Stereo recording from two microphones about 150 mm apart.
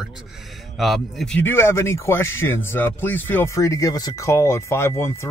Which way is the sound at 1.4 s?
15° left (ahead or behind).